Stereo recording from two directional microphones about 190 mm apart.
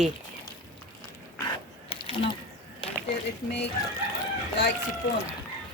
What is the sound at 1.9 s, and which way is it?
Ratchet, 30° left (ahead or behind).